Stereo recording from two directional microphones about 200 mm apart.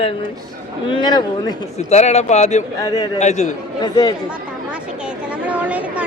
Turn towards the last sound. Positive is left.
turn(degrees=-5)  # may be behind; listen again after turning